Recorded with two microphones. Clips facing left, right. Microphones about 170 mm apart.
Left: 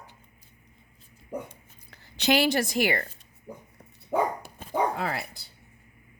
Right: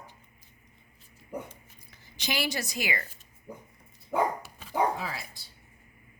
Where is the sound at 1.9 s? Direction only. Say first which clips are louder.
Left 10 dB; 65° left (ahead or behind).